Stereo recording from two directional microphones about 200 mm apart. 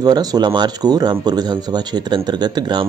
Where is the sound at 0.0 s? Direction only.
20° right (ahead or behind).